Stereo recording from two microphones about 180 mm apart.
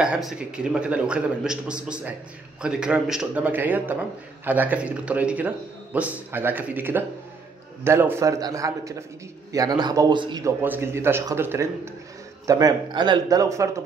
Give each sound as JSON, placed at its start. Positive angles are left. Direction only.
{"t": 0.0, "sound": "a man's voice", "side_deg": -5}
{"t": 10.6, "sound": "a man's voice", "side_deg": -15}